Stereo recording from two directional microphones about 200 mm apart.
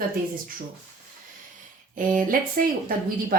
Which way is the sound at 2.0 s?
45° right (ahead or behind).